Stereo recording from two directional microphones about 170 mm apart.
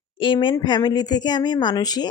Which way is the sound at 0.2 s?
30° left (ahead or behind).